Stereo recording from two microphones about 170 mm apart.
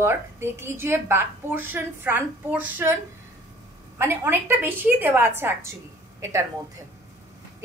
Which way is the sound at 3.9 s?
15° right (ahead or behind).